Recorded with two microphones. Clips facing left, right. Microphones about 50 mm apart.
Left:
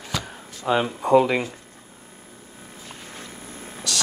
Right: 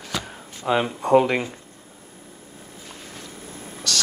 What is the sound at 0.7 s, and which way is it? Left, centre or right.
Speech, centre.